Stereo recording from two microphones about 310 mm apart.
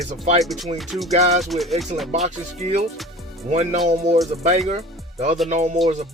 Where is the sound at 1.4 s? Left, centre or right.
Centre.